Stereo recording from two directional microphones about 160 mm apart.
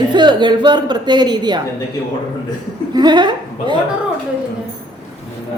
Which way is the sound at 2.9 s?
25° right (ahead or behind).